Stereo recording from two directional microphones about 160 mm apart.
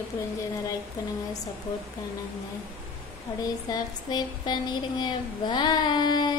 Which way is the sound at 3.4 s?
25° left (ahead or behind).